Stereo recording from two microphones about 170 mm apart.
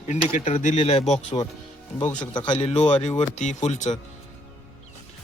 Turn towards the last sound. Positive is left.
turn(degrees=45)  # may be behind; listen again after turning